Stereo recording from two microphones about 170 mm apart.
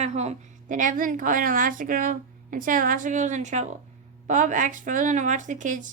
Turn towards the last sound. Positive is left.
turn(degrees=-50)  # may be behind; listen again after turning